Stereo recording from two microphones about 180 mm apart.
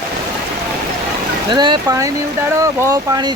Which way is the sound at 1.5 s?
25° right (ahead or behind).